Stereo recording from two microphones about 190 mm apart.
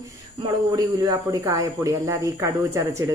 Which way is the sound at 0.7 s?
20° right (ahead or behind).